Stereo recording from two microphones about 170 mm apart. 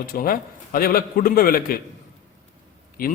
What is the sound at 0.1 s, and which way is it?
A man's voice, 60° left (ahead or behind).